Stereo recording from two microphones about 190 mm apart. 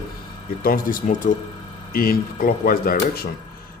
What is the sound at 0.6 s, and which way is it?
Speech, 50° left (ahead or behind).